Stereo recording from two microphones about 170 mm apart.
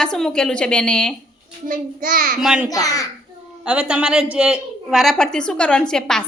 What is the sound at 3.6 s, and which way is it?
A woman's voice, 5° right (ahead or behind).